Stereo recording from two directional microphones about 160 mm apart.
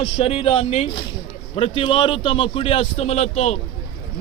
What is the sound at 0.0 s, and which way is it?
A man's voice, 40° left (ahead or behind).